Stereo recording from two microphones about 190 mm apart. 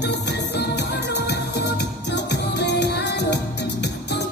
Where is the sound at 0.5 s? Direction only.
60° left (ahead or behind).